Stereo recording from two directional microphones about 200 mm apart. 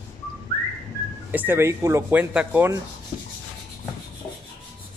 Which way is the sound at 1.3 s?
10° right (ahead or behind).